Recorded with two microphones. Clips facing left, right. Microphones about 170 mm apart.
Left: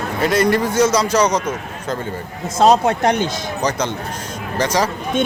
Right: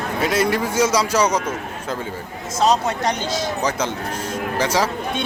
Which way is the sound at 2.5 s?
55° left (ahead or behind).